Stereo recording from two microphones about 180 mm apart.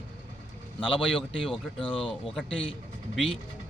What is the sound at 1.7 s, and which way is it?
Speech, 30° left (ahead or behind).